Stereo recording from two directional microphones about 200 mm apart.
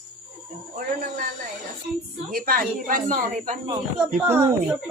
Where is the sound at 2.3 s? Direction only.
45° right (ahead or behind).